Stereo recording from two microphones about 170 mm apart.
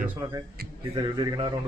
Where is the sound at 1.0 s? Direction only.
30° right (ahead or behind).